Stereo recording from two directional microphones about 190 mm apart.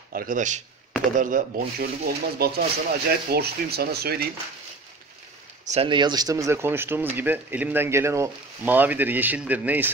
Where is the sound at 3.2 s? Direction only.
55° right (ahead or behind).